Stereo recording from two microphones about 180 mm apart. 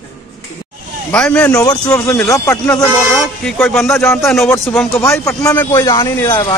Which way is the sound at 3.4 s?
5° left (ahead or behind).